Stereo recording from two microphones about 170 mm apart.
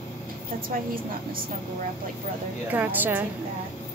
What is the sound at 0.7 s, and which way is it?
Speech, 55° right (ahead or behind).